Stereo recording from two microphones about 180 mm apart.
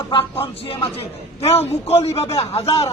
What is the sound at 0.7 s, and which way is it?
A man's voice, 30° left (ahead or behind).